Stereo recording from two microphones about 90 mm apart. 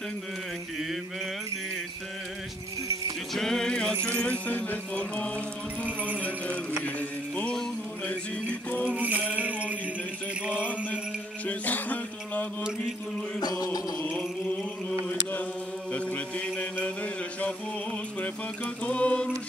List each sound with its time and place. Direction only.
3.3 s keys jangling: 5° left (ahead or behind)
3.9 s speech: 30° right (ahead or behind)
4.2 s mantra: 15° left (ahead or behind)
7.0 s music: 15° left (ahead or behind)
8.8 s music: 15° right (ahead or behind)
10.5 s mantra: 20° left (ahead or behind)
11.4 s music: 15° left (ahead or behind)
13.4 s chant: 45° left (ahead or behind)
13.9 s chant: 15° left (ahead or behind)
15.9 s mantra: 15° left (ahead or behind)
18.9 s mantra: 15° left (ahead or behind)